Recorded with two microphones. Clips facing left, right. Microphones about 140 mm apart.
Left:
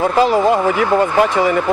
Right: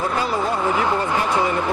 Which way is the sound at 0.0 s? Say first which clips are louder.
Left 9 dB; 90° left.